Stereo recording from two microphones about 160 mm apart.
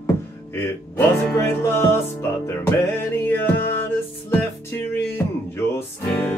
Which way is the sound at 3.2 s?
15° left (ahead or behind).